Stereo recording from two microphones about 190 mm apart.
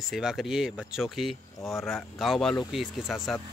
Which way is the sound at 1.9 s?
Centre (ahead or behind).